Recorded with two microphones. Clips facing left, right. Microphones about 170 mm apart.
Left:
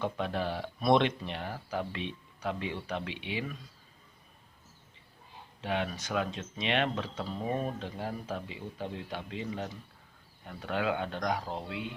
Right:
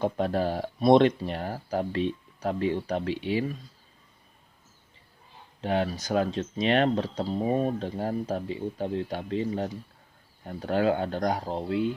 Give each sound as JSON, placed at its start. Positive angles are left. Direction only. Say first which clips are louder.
{"t": 0.0, "sound": "speech", "louder": "right 6 dB", "side_deg": -40}
{"t": 5.6, "sound": "speech", "louder": "right 6 dB", "side_deg": -35}